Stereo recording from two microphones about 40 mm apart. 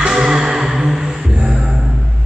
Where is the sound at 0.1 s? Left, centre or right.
Centre.